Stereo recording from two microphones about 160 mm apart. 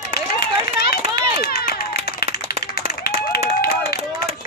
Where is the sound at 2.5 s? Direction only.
75° left (ahead or behind).